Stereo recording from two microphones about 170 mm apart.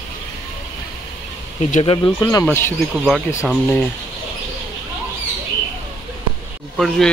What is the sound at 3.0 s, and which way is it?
Speech, 5° right (ahead or behind).